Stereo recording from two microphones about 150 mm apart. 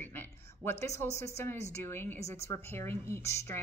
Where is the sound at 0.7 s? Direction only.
20° left (ahead or behind).